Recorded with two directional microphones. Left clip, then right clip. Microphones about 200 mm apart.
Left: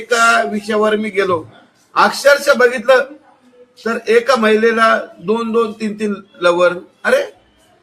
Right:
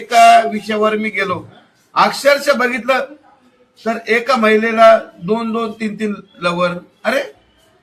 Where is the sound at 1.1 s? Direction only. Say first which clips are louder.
Left 3 dB; 15° left (ahead or behind).